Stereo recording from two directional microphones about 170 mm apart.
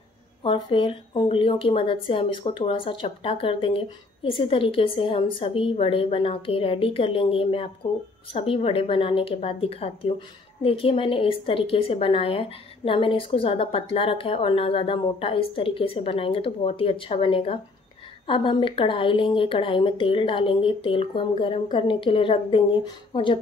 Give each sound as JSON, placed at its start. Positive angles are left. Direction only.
{"t": 0.4, "sound": "speech", "side_deg": 30}